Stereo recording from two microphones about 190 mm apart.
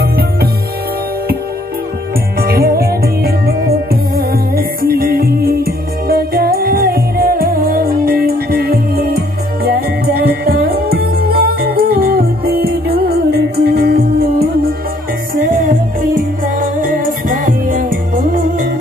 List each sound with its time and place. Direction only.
2.4 s music: 50° right (ahead or behind)